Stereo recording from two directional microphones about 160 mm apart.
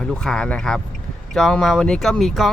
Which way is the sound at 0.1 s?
5° left (ahead or behind).